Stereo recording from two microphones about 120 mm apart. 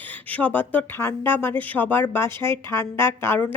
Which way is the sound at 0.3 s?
15° left (ahead or behind).